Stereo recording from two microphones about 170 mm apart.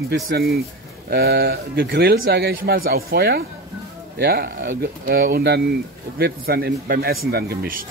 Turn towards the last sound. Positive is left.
turn(degrees=-65)  # may be behind; listen again after turning